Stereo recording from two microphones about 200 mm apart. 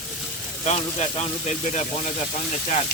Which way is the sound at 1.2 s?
35° left (ahead or behind).